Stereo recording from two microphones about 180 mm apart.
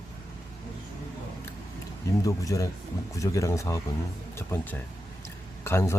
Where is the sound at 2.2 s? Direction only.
20° left (ahead or behind).